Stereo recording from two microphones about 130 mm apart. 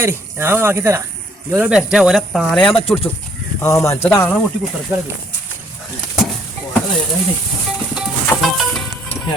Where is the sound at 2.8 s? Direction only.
45° left (ahead or behind).